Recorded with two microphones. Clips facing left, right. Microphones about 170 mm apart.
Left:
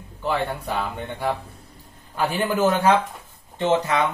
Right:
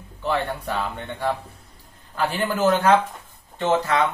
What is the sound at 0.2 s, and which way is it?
Speech, 15° left (ahead or behind).